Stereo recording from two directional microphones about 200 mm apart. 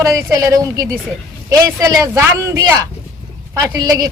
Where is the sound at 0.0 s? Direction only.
15° right (ahead or behind).